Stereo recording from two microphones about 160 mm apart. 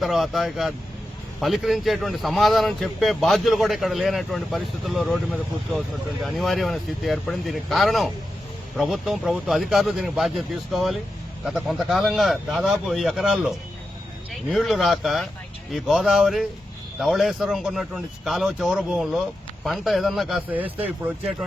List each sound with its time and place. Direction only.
0.0 s speech: centre (ahead or behind)
14.5 s speech: centre (ahead or behind)